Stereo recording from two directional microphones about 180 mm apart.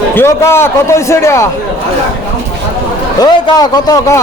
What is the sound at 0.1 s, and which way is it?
A man's voice, 15° left (ahead or behind).